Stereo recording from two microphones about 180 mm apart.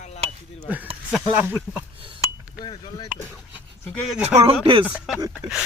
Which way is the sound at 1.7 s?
10° right (ahead or behind).